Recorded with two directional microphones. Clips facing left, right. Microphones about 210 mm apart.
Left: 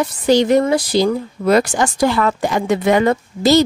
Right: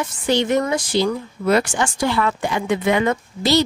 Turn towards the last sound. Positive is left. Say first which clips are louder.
# left 5 dB
turn(degrees=45)  # may be behind; listen again after turning